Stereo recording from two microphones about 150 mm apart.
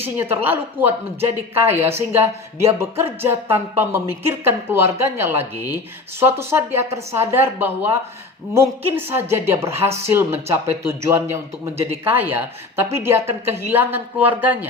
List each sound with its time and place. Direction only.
0.0 s speech: 15° right (ahead or behind)